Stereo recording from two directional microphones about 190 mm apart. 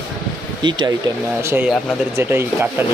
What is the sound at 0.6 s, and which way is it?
Speech, 25° right (ahead or behind).